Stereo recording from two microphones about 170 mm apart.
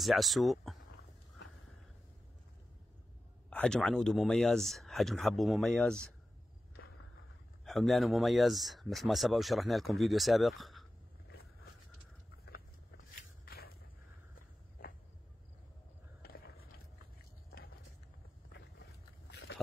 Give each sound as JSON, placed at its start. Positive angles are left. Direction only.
{"t": 0.0, "sound": "speech", "side_deg": 0}
{"t": 3.4, "sound": "speech", "side_deg": 5}
{"t": 7.6, "sound": "speech", "side_deg": 0}
{"t": 16.2, "sound": "a sound", "side_deg": 65}